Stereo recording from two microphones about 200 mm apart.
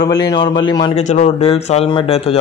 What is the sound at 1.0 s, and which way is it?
Speech, 35° left (ahead or behind).